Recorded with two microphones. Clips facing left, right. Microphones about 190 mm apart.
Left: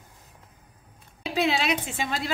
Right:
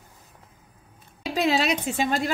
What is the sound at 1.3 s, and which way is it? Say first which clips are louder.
Speech: right 2 dB; 45° right (ahead or behind).